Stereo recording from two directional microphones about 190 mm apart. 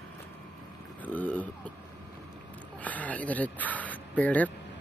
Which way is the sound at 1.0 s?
10° left (ahead or behind).